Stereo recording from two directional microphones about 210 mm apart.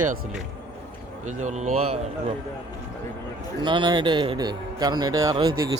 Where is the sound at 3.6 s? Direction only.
20° right (ahead or behind).